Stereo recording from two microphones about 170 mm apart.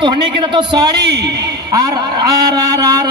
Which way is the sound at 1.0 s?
80° right.